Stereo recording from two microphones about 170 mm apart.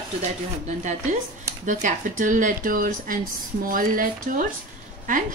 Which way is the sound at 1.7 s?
50° right (ahead or behind).